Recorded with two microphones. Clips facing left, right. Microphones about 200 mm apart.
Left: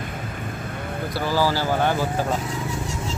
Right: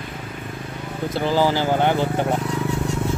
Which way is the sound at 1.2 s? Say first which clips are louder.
Right 3 dB; 20° right (ahead or behind).